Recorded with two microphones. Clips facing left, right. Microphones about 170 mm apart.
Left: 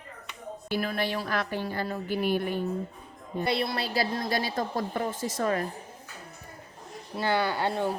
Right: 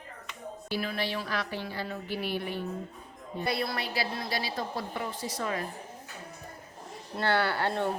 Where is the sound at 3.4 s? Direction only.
25° left (ahead or behind).